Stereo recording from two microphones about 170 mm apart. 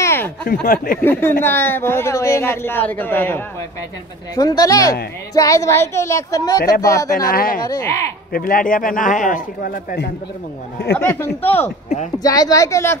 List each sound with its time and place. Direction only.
0.0 s a sound: 15° left (ahead or behind)
0.5 s speech: 55° left (ahead or behind)
1.4 s speech: 15° left (ahead or behind)
4.4 s speech: 25° left (ahead or behind)
7.1 s speech: 55° left (ahead or behind)
7.6 s speech: 20° left (ahead or behind)
8.3 s a man's voice: 60° left (ahead or behind)
11.0 s speech: 15° left (ahead or behind)